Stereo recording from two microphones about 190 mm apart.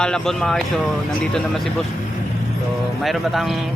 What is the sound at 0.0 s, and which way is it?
Speech, 5° left (ahead or behind).